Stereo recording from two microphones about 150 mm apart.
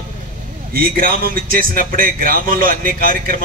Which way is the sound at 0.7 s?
70° right (ahead or behind).